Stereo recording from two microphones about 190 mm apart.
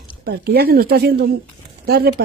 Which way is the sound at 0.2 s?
55° right (ahead or behind).